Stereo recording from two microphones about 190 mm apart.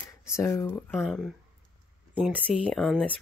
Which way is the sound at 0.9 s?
Centre (ahead or behind).